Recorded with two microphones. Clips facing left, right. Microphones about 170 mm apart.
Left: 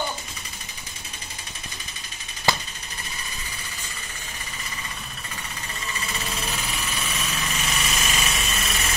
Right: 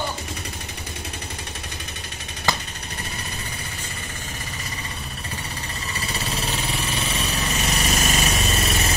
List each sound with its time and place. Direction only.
5.9 s lawn mower: 35° right (ahead or behind)